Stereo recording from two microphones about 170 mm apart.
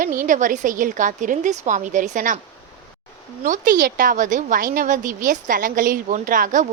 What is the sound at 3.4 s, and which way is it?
A woman's voice, 50° right (ahead or behind).